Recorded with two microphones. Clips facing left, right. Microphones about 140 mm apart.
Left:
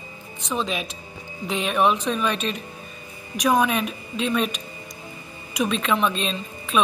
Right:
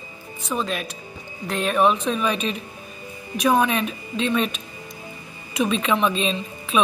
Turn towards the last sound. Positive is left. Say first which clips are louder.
# right 1 dB
turn(degrees=0)  # may be behind; listen again after turning